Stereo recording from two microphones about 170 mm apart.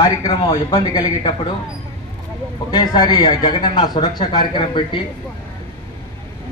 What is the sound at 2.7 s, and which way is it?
A man's voice, 25° left (ahead or behind).